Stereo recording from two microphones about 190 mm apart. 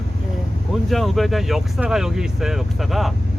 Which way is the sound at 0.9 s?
Centre (ahead or behind).